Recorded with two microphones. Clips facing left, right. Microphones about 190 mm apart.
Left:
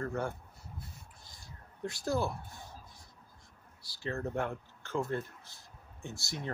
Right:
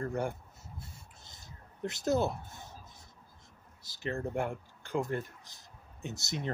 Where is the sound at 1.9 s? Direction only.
20° right (ahead or behind).